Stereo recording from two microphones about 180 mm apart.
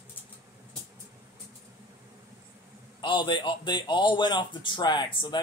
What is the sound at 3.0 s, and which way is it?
A man's voice, 25° left (ahead or behind).